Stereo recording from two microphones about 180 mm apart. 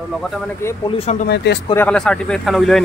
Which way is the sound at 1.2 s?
70° left (ahead or behind).